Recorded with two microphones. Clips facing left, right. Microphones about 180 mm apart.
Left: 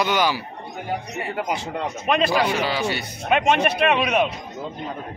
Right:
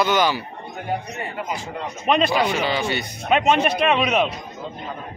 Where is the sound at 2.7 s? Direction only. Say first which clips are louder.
Right 1 dB; 5° left (ahead or behind).